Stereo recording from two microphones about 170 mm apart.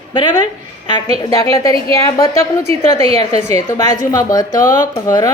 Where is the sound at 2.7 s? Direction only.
35° right (ahead or behind).